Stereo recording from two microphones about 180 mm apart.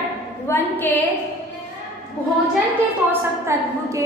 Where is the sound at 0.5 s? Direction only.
10° left (ahead or behind).